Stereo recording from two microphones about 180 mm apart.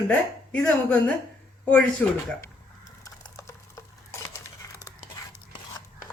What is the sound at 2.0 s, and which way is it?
Speech, 10° left (ahead or behind).